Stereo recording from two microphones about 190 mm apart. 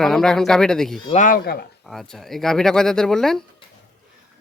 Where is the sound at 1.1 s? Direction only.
45° left (ahead or behind).